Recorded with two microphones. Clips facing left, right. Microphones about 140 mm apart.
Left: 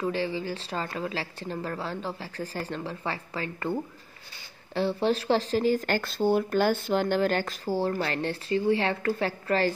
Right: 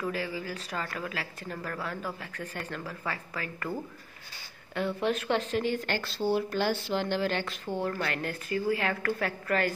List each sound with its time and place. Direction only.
0.0 s speech: 25° left (ahead or behind)
4.7 s speech: 30° left (ahead or behind)